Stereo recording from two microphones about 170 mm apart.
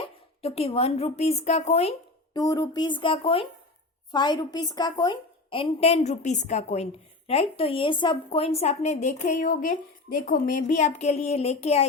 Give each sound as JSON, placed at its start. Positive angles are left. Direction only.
{"t": 0.0, "sound": "speech", "side_deg": 35}
{"t": 2.3, "sound": "a woman's voice", "side_deg": 25}